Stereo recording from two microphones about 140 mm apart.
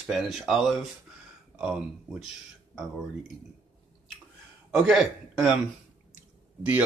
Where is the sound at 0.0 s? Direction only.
Centre (ahead or behind).